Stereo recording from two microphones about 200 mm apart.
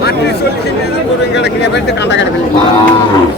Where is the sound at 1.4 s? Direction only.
60° left (ahead or behind).